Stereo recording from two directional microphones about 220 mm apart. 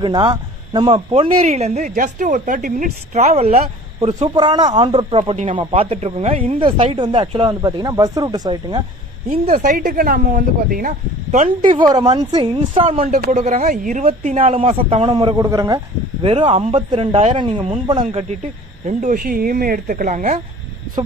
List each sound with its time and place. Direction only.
0.0 s speech: 20° right (ahead or behind)
9.5 s speech: 35° right (ahead or behind)
11.8 s speech: 25° right (ahead or behind)
18.9 s speech: 35° right (ahead or behind)